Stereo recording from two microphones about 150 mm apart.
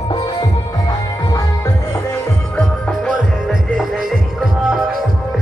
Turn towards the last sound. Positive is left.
turn(degrees=-5)  # may be behind; listen again after turning